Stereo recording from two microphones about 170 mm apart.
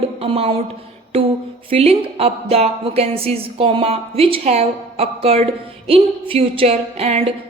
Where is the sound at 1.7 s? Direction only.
35° right (ahead or behind).